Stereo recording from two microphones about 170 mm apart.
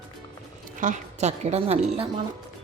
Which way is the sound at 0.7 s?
50° right (ahead or behind).